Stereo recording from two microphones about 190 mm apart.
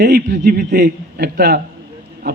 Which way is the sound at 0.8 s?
55° right (ahead or behind).